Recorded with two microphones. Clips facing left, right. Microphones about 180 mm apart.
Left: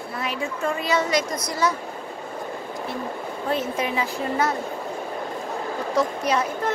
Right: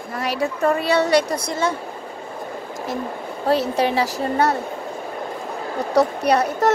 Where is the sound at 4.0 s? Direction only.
70° right (ahead or behind).